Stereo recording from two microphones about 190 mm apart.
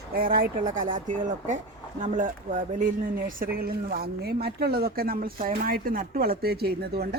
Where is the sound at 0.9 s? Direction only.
40° right (ahead or behind).